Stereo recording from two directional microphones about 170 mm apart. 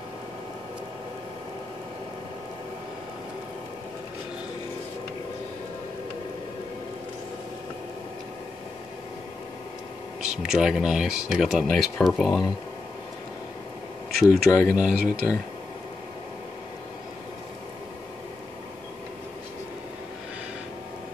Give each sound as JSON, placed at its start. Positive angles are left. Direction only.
{"t": 10.4, "sound": "speech", "side_deg": 0}
{"t": 14.2, "sound": "speech", "side_deg": -5}